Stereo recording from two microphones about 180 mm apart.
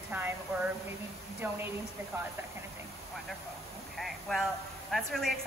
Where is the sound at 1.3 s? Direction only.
10° right (ahead or behind).